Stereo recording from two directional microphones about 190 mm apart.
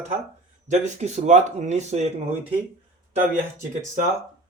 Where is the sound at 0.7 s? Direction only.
35° right (ahead or behind).